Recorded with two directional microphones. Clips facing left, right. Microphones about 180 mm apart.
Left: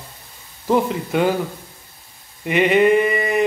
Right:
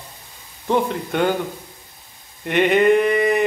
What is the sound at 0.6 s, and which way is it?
Speech, 5° left (ahead or behind).